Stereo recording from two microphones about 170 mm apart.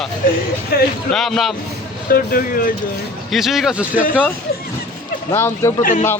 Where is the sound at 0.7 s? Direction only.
65° left (ahead or behind).